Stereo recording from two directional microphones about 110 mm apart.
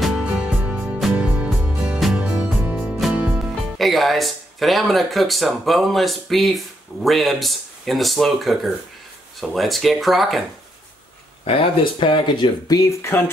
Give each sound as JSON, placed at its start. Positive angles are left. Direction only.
{"t": 0.0, "sound": "music", "side_deg": -5}
{"t": 2.1, "sound": "speech", "side_deg": -10}
{"t": 11.4, "sound": "speech", "side_deg": 55}
{"t": 13.1, "sound": "speech", "side_deg": 20}